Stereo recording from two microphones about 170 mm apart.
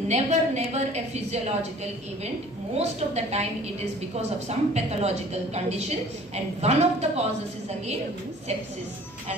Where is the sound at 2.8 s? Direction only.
40° right (ahead or behind).